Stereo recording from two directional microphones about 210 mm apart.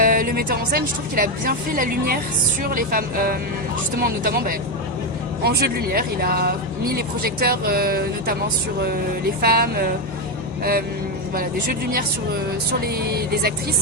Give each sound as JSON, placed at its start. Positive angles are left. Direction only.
{"t": 0.0, "sound": "speech", "side_deg": -45}